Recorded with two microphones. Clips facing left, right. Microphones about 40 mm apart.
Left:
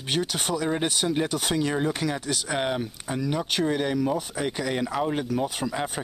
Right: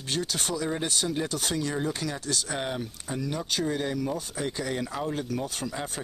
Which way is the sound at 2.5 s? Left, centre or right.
Left.